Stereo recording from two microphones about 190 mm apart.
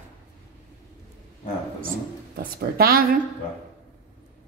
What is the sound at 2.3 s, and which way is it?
Speech, 55° right (ahead or behind).